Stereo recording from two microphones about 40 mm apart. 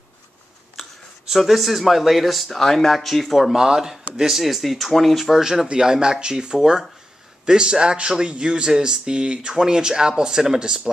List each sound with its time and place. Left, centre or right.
0.8 s a sound: centre
1.3 s speech: centre
2.5 s speech: centre
3.5 s speech: centre
5.4 s speech: centre